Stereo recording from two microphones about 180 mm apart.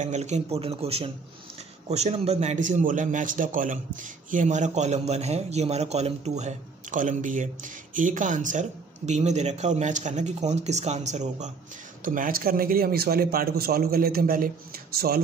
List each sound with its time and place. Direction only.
0.0 s a man's voice: 40° right (ahead or behind); by 15.2 s 60° right (ahead or behind)